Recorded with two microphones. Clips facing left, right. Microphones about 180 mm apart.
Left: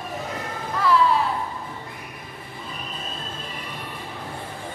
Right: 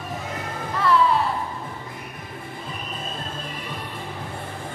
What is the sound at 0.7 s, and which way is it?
Music, centre (ahead or behind).